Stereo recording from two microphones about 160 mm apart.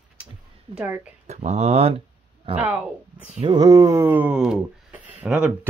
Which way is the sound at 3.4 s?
25° right (ahead or behind).